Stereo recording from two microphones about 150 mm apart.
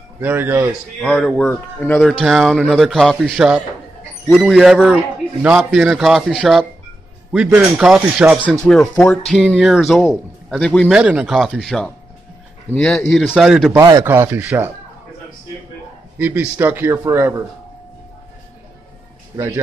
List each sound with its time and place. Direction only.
0.2 s speech: 15° right (ahead or behind)
1.0 s speech: 5° left (ahead or behind)
2.1 s a man's voice: centre (ahead or behind)
8.6 s a man's voice: 5° left (ahead or behind)
10.9 s a man's voice: 5° right (ahead or behind)
13.7 s a man's voice: 25° right (ahead or behind)
16.2 s speech: 10° right (ahead or behind)
19.3 s speech: 15° right (ahead or behind)